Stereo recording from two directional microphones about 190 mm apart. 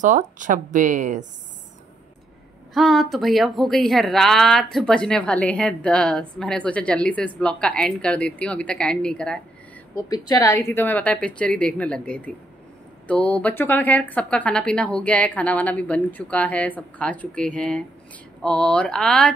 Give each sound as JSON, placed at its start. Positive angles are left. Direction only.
{"t": 0.0, "sound": "speech", "side_deg": -40}
{"t": 2.7, "sound": "a woman's voice", "side_deg": 0}
{"t": 9.9, "sound": "a woman's voice", "side_deg": 20}